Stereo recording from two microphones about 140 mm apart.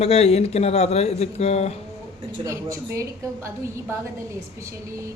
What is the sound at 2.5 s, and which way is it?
A woman's voice, 20° right (ahead or behind).